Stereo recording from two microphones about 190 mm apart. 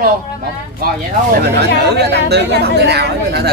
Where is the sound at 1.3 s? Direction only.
60° right (ahead or behind).